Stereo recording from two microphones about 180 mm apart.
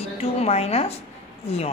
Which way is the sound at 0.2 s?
35° left (ahead or behind).